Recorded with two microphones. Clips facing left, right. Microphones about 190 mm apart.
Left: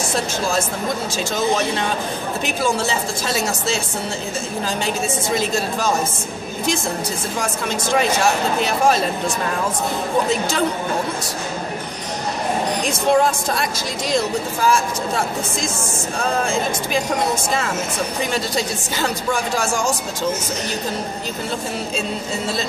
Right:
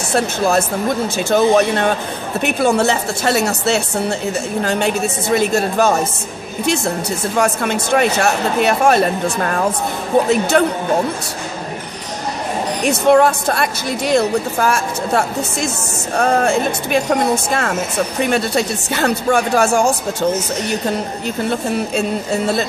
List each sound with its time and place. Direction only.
0.1 s a woman's voice: 65° right (ahead or behind)
12.8 s a woman's voice: 65° right (ahead or behind)